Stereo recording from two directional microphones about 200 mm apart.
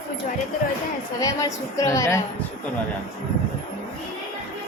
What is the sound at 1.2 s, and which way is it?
A woman's voice, 15° left (ahead or behind).